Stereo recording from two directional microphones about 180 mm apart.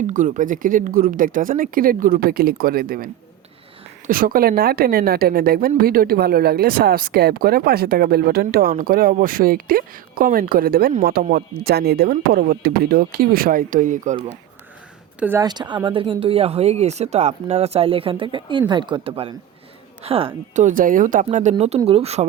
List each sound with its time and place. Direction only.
0.1 s a woman's voice: 45° right (ahead or behind)
15.2 s speech: 10° right (ahead or behind)
15.4 s speech: 25° right (ahead or behind)
20.7 s speech: 50° right (ahead or behind)